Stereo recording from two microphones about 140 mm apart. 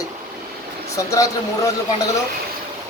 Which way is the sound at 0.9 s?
25° left (ahead or behind).